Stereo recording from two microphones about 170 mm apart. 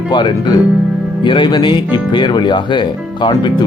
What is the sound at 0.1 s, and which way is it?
Speech, 30° left (ahead or behind).